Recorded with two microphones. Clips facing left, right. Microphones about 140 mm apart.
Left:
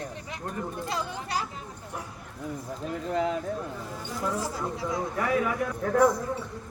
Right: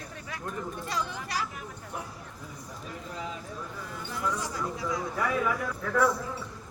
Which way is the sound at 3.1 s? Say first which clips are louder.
Left 12 dB; 65° left (ahead or behind).